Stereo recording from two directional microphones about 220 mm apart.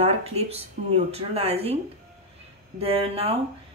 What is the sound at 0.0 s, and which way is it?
A woman's voice, 30° right (ahead or behind).